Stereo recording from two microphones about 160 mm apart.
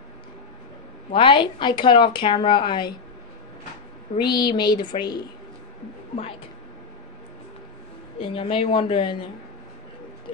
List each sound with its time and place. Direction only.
1.1 s a woman's voice: 30° left (ahead or behind)
4.3 s speech: 25° left (ahead or behind)
8.2 s a woman's voice: 35° left (ahead or behind)